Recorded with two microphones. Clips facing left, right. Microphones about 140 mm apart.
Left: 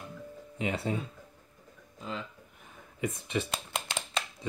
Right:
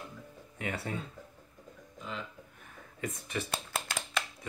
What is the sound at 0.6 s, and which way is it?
Speech, 20° left (ahead or behind).